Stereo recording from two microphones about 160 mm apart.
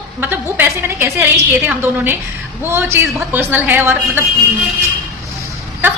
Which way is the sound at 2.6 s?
15° right (ahead or behind).